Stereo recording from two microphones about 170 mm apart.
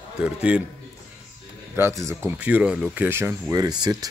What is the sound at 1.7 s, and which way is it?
Speech, 15° right (ahead or behind).